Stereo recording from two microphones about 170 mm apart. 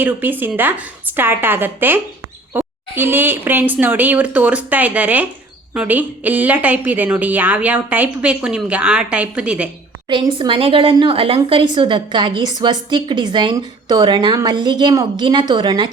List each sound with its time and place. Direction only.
0.0 s a woman's voice: 10° right (ahead or behind)
10.1 s a woman's voice: 30° right (ahead or behind)